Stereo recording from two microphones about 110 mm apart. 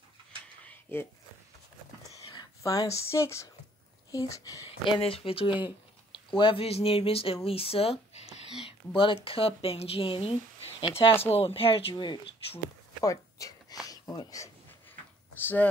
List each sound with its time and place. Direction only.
0.7 s a sound: 15° left (ahead or behind)
2.3 s speech: 35° left (ahead or behind)
4.8 s speech: 50° left (ahead or behind); by 8.4 s 75° left (ahead or behind)
8.6 s speech: 50° left (ahead or behind)
11.9 s speech: 45° left (ahead or behind)
13.0 s a sound: 30° left (ahead or behind)
13.8 s speech: 30° left (ahead or behind)
15.4 s speech: 15° left (ahead or behind)